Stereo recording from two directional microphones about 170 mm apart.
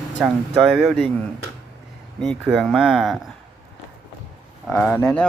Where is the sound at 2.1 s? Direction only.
5° left (ahead or behind).